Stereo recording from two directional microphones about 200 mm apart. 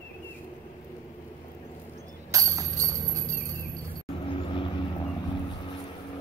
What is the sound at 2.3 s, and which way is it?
Music, 15° right (ahead or behind).